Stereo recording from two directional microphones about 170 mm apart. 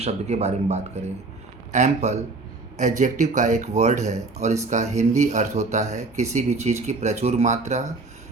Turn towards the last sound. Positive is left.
turn(degrees=-45)  # may be behind; listen again after turning